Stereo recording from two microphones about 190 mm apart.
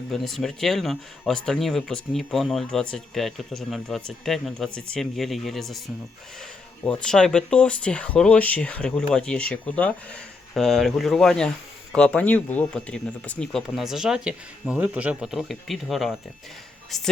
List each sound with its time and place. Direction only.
0.1 s speech: centre (ahead or behind)
6.8 s speech: 5° left (ahead or behind)